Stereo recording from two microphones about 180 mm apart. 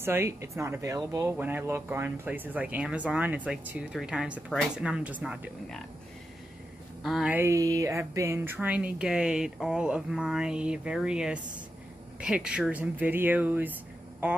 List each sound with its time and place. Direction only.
0.0 s speech: 15° right (ahead or behind)
7.0 s speech: centre (ahead or behind)